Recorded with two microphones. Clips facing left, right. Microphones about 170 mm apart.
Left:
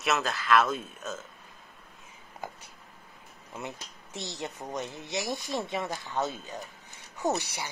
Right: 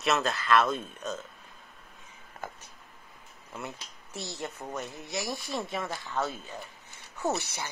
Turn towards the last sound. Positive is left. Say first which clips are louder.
# left 1 dB
turn(degrees=15)  # may be behind; listen again after turning